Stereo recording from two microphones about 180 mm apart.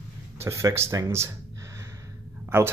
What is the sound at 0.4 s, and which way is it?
Speech, 15° right (ahead or behind).